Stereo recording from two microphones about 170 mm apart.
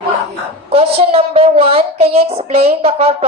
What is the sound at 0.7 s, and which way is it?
A woman's voice, 35° right (ahead or behind).